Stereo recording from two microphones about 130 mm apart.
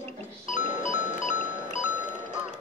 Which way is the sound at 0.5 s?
75° left (ahead or behind).